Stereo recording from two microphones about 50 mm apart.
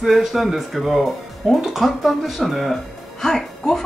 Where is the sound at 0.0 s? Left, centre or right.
Centre.